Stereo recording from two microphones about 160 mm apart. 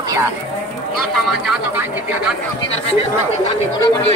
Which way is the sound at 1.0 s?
Centre (ahead or behind).